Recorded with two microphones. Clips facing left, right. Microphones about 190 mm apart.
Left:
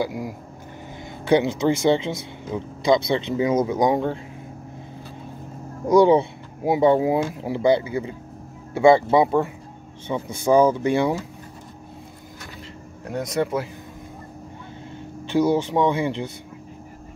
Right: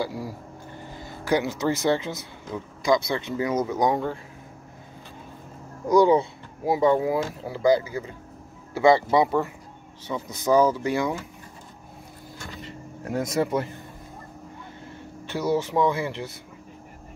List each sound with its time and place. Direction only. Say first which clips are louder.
0.0 s speech: left 3 dB; 15° left (ahead or behind)
5.9 s speech: left 3 dB; 25° left (ahead or behind)
10.4 s speech: left 3 dB; 10° left (ahead or behind)
10.7 s speech: left 5 dB; 30° left (ahead or behind)
12.6 s speech: right 3 dB; 5° right (ahead or behind)
15.5 s speech: left 2 dB; 15° left (ahead or behind)